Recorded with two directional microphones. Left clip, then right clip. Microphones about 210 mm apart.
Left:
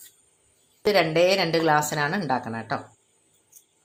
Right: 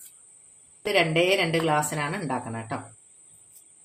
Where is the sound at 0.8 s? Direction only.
25° left (ahead or behind).